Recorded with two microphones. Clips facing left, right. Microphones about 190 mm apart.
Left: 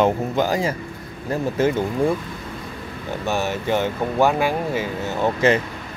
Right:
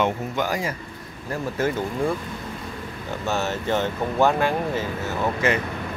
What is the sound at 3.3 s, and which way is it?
Speech, 15° left (ahead or behind).